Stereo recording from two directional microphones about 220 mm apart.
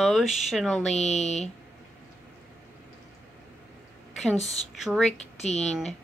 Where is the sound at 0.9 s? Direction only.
30° left (ahead or behind).